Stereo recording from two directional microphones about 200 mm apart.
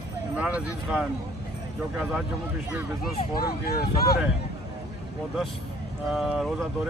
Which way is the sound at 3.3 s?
50° left (ahead or behind).